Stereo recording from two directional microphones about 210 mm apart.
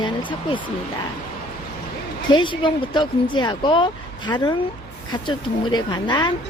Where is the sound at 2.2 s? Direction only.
20° left (ahead or behind).